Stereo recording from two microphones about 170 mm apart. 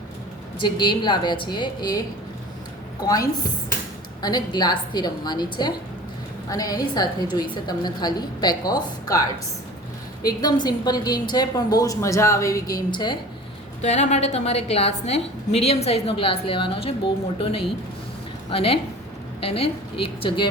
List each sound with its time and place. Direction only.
0.6 s a woman's voice: 25° left (ahead or behind)
10.2 s a woman's voice: 25° left (ahead or behind)
13.8 s a woman's voice: 40° left (ahead or behind)